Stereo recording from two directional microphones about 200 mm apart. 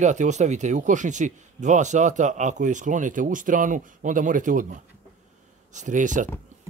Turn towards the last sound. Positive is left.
turn(degrees=-40)  # may be behind; listen again after turning